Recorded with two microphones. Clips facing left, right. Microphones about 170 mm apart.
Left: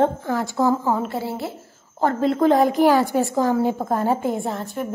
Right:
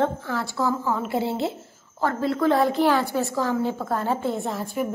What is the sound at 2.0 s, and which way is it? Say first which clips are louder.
A woman's voice: left 4 dB; 20° left (ahead or behind).